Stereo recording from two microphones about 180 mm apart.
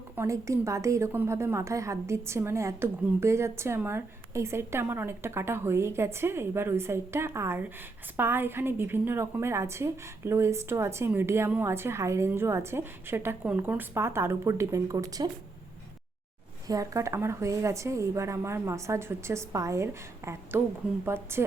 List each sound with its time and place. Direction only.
0.2 s a woman's voice: 15° right (ahead or behind)
16.6 s a woman's voice: 20° right (ahead or behind)